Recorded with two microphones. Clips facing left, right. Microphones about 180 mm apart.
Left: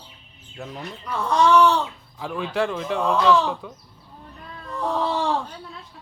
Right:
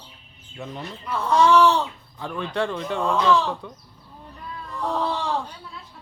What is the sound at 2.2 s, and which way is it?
Speech, 5° left (ahead or behind).